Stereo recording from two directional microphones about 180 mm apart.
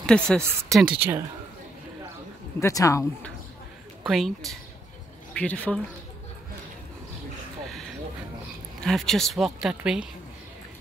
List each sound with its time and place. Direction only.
0.0 s speech: 5° left (ahead or behind)
0.9 s speech: 10° right (ahead or behind)
2.6 s a woman's voice: 15° left (ahead or behind)
4.0 s speech: centre (ahead or behind)
8.8 s speech: centre (ahead or behind)